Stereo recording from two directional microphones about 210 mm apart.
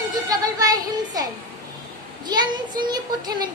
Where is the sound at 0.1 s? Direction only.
15° right (ahead or behind).